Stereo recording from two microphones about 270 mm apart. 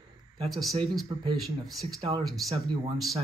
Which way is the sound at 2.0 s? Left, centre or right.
Right.